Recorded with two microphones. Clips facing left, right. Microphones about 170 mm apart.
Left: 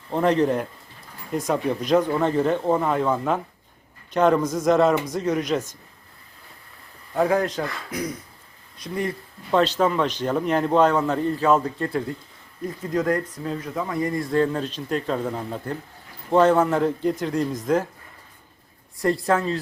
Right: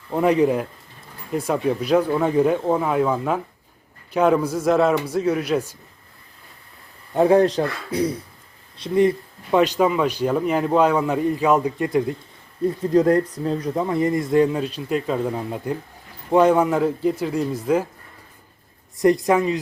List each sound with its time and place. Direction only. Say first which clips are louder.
0.1 s speech: right 2 dB; 10° right (ahead or behind)
7.1 s speech: right 6 dB; 25° right (ahead or behind)
12.6 s speech: right 7 dB; 30° right (ahead or behind); by 17.8 s 10° right (ahead or behind)
18.9 s speech: right 5 dB; 20° right (ahead or behind)